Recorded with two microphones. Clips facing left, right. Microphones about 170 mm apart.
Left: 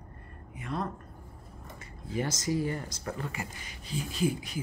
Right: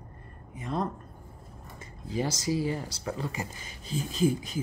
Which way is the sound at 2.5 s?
90° right.